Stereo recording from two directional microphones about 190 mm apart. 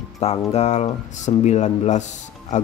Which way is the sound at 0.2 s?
35° left (ahead or behind).